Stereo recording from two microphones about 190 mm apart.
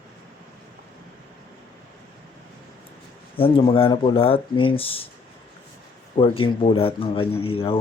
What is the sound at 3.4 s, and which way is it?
Speech, 30° left (ahead or behind).